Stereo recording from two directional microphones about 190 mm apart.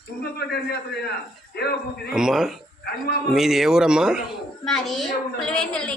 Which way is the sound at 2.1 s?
Centre (ahead or behind).